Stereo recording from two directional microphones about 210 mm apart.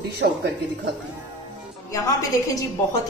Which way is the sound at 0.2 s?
55° right (ahead or behind).